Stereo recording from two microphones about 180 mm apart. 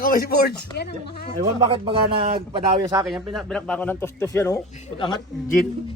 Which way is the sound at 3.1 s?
Centre (ahead or behind).